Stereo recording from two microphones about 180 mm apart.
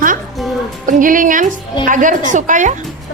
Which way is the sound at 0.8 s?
50° right (ahead or behind).